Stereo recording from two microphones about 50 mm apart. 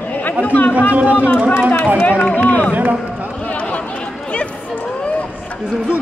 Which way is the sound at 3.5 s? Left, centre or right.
Left.